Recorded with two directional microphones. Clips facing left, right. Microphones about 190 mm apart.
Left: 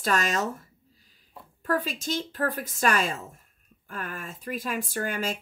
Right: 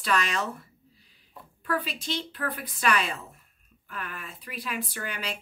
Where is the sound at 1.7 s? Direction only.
45° left (ahead or behind).